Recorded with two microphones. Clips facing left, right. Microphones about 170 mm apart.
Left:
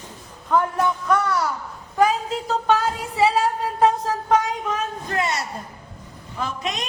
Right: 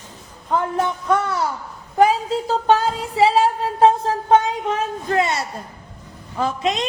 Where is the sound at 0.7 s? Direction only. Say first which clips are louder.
Right 1 dB; 25° right (ahead or behind).